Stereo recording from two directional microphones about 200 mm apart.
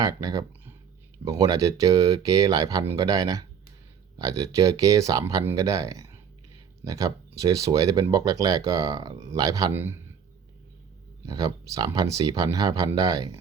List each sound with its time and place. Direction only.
0.0 s speech: 20° right (ahead or behind)
11.3 s speech: 20° right (ahead or behind)